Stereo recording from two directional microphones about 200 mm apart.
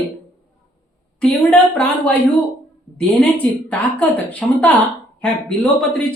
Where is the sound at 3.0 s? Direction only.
5° left (ahead or behind).